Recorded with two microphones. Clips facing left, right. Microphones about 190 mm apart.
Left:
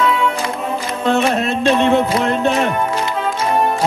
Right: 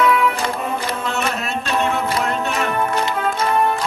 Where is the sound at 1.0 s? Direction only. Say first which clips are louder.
Left 8 dB; 30° left (ahead or behind).